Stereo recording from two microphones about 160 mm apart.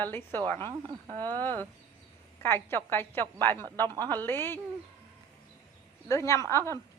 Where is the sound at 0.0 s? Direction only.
10° left (ahead or behind).